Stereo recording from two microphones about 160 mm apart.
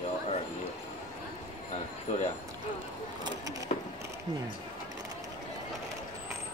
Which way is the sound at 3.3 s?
20° right (ahead or behind).